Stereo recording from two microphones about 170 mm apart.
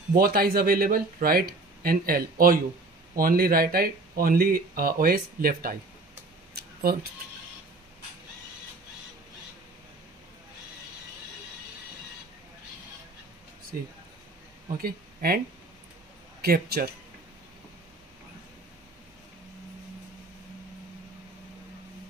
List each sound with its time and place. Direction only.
0.1 s speech: 60° right (ahead or behind)
6.5 s a sound: 65° right (ahead or behind)
14.8 s speech: 60° right (ahead or behind)